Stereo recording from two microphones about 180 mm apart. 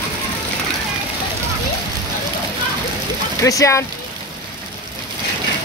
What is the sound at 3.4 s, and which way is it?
Speech, 15° left (ahead or behind).